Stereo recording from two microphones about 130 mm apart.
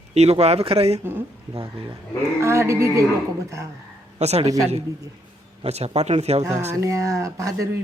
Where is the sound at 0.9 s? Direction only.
15° right (ahead or behind).